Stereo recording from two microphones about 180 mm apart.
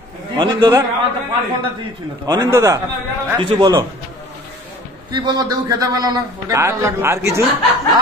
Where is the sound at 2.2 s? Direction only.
20° right (ahead or behind).